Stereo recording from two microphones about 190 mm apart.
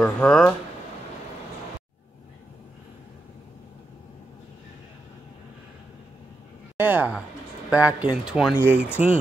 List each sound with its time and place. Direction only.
0.0 s speech: 5° left (ahead or behind)
6.8 s speech: 10° right (ahead or behind)